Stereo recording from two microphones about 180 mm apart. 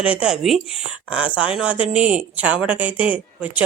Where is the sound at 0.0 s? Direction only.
5° right (ahead or behind).